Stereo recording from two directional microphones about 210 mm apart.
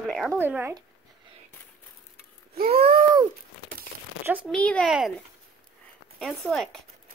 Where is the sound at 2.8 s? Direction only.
20° right (ahead or behind).